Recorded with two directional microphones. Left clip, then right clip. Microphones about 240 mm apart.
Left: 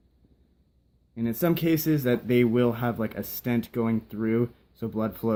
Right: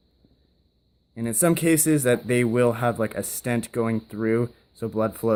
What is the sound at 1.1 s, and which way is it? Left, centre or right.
Speech, right.